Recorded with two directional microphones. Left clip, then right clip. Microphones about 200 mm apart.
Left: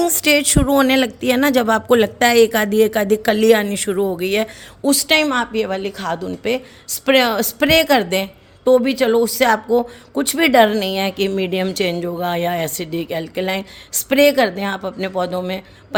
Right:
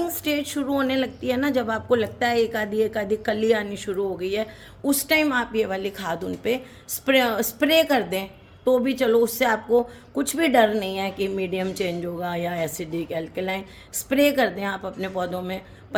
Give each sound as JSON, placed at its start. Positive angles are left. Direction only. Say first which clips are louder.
{"t": 0.0, "sound": "speech", "louder": "left 11 dB", "side_deg": 50}